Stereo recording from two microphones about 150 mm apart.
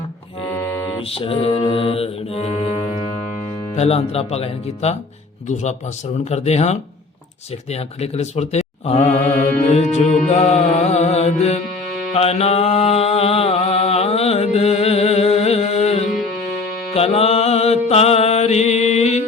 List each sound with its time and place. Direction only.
1.1 s mantra: 40° left (ahead or behind)
3.8 s music: 40° left (ahead or behind)
6.3 s music: 45° left (ahead or behind)
12.1 s mantra: 45° left (ahead or behind)